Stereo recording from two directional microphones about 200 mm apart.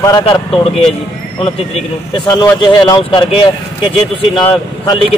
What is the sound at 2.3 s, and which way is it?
A man's voice, 20° left (ahead or behind).